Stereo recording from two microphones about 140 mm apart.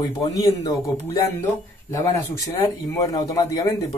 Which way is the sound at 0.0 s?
25° left (ahead or behind).